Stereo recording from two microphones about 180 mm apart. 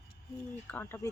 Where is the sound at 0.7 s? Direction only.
10° left (ahead or behind).